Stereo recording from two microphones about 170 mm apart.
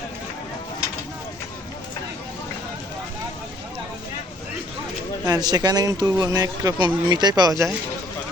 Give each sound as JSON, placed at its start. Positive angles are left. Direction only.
{"t": 5.2, "sound": "speech", "side_deg": -20}